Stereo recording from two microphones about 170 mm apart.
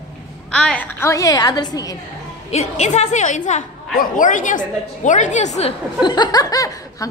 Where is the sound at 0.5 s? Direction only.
5° left (ahead or behind); by 1.9 s 25° left (ahead or behind).